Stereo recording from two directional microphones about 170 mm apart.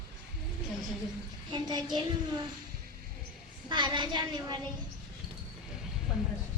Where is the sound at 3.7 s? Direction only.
25° right (ahead or behind).